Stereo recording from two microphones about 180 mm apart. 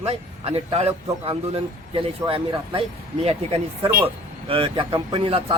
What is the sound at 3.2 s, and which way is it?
A man's voice, 35° right (ahead or behind).